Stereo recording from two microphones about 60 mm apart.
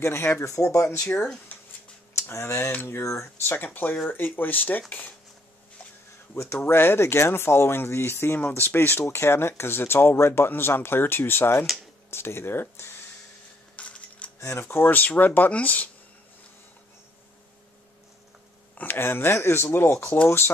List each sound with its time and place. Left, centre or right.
0.0 s speech: left
0.4 s speech: left
1.1 s speech: centre
2.1 s speech: left
3.4 s speech: left
6.3 s speech: left
6.6 s speech: left
13.7 s coin: left
14.4 s speech: left
18.8 s speech: left